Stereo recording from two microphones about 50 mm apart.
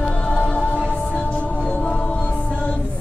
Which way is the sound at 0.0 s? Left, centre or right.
Left.